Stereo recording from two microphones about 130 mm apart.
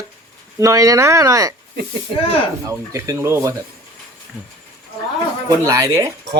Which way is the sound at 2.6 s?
25° right (ahead or behind).